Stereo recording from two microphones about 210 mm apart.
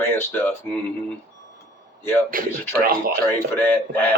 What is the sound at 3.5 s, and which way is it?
Speech, 10° left (ahead or behind).